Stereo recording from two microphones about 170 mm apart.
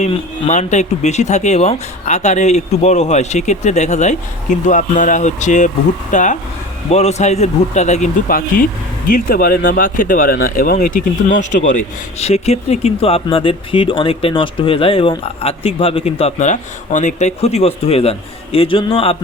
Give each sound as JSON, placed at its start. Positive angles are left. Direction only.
{"t": 0.0, "sound": "speech", "side_deg": 40}
{"t": 9.1, "sound": "speech", "side_deg": 60}
{"t": 11.3, "sound": "speech", "side_deg": 45}